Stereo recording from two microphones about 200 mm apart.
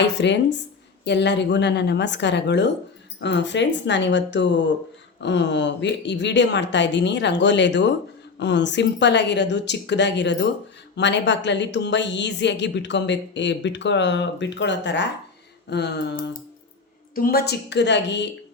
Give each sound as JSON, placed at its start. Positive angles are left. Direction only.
{"t": 0.0, "sound": "a woman's voice", "side_deg": 60}